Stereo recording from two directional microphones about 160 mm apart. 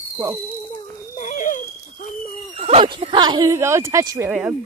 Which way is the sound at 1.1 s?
50° left (ahead or behind).